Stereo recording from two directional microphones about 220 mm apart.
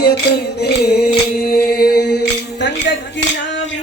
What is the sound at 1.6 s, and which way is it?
Mantra, 45° left (ahead or behind).